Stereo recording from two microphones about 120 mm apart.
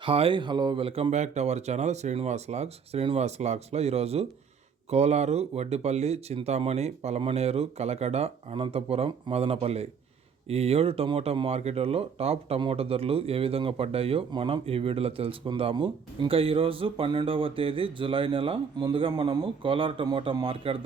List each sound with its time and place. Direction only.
0.0 s speech: 50° right (ahead or behind)
1.1 s speech: 75° right (ahead or behind); by 20.7 s 45° right (ahead or behind)